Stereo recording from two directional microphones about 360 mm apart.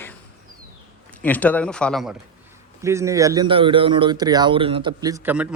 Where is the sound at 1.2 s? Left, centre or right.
Centre.